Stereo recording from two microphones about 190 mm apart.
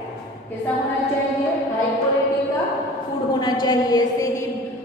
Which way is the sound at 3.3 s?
25° left (ahead or behind).